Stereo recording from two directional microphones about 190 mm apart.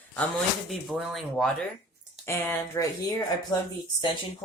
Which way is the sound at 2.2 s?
10° left (ahead or behind).